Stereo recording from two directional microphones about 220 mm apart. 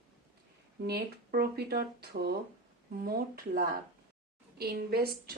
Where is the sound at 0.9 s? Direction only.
45° right (ahead or behind).